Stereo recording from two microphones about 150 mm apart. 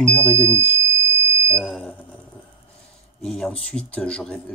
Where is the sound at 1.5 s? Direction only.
5° left (ahead or behind).